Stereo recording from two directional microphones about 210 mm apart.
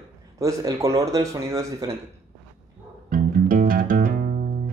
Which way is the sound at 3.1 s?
40° right (ahead or behind).